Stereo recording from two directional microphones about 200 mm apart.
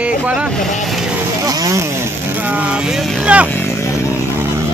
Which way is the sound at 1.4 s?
20° right (ahead or behind).